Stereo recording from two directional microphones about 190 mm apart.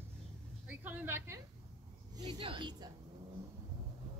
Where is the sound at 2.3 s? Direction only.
25° right (ahead or behind).